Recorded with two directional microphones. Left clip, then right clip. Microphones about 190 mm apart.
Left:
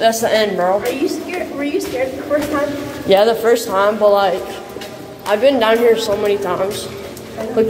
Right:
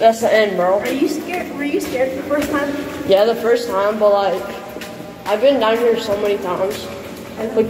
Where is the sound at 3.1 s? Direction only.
25° left (ahead or behind).